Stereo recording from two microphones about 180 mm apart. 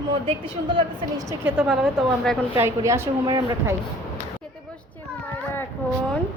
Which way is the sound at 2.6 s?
15° right (ahead or behind).